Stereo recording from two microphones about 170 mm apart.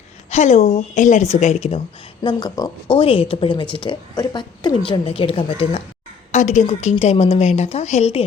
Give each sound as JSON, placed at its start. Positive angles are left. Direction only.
{"t": 0.3, "sound": "speech", "side_deg": 40}
{"t": 2.2, "sound": "speech", "side_deg": 25}
{"t": 6.3, "sound": "a woman's voice", "side_deg": 45}